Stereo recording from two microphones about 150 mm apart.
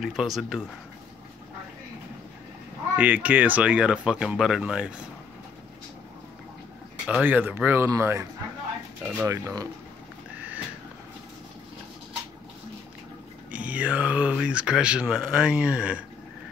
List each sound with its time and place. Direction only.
0.0 s speech: centre (ahead or behind)
3.0 s speech: 10° right (ahead or behind)
7.1 s speech: 10° right (ahead or behind)
13.5 s speech: 10° right (ahead or behind)